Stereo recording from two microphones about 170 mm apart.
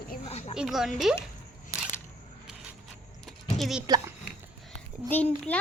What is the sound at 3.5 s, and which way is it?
Speech, centre (ahead or behind).